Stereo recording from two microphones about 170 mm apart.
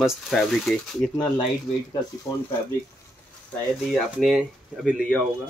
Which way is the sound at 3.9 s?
Centre (ahead or behind).